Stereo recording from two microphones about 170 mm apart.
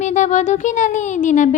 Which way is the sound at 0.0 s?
45° left (ahead or behind).